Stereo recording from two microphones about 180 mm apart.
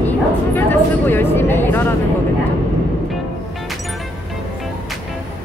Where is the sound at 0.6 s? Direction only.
10° left (ahead or behind).